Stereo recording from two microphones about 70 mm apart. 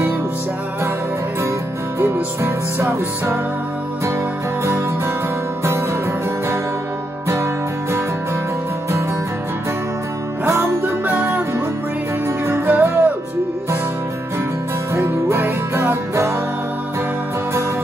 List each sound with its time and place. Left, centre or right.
2.1 s music: right
10.4 s music: right
12.4 s music: right
15.0 s music: right